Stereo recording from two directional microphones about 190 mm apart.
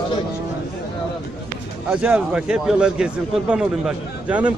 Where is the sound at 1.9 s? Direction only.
5° right (ahead or behind).